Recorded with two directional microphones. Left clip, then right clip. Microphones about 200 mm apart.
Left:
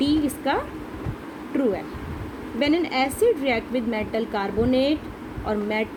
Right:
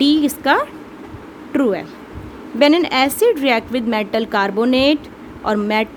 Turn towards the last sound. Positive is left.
turn(degrees=-45)  # may be behind; listen again after turning